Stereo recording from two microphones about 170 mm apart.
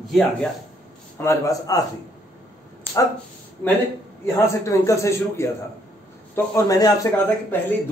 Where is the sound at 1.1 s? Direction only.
20° left (ahead or behind).